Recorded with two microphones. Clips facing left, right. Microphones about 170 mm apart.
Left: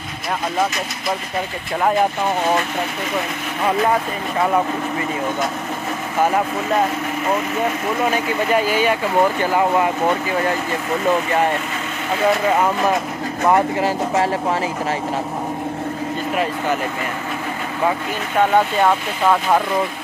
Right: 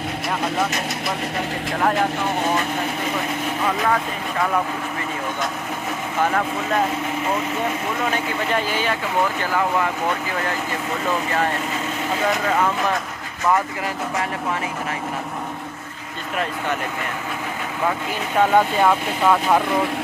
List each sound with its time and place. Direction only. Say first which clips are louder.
8.0 s speech: left 5 dB; 10° left (ahead or behind)
12.4 s speech: left 3 dB; 20° left (ahead or behind)
13.4 s speech: left 5 dB; 30° left (ahead or behind)